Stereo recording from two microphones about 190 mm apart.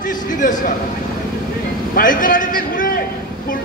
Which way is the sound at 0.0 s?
45° left (ahead or behind).